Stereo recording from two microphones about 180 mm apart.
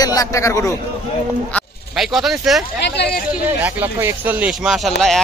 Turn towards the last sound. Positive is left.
turn(degrees=0)  # may be behind; listen again after turning